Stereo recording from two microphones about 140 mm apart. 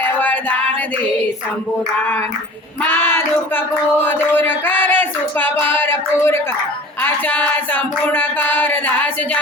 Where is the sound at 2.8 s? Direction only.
15° left (ahead or behind).